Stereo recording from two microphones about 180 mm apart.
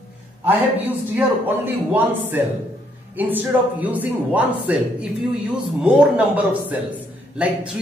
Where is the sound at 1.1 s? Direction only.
10° right (ahead or behind).